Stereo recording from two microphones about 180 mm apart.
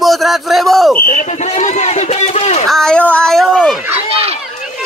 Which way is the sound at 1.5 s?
40° left (ahead or behind).